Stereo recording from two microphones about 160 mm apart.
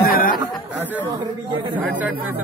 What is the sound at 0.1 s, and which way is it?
Chatter, 65° left (ahead or behind).